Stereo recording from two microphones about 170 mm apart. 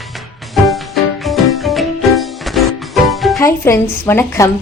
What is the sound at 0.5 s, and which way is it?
Music, centre (ahead or behind).